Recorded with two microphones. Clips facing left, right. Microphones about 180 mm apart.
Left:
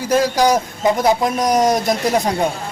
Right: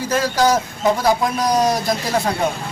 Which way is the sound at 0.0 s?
10° left (ahead or behind).